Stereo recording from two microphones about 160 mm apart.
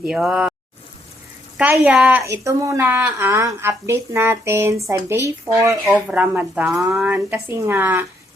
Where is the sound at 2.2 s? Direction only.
20° right (ahead or behind).